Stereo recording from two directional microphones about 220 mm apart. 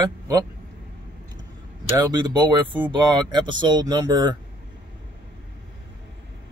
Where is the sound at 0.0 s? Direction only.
15° right (ahead or behind).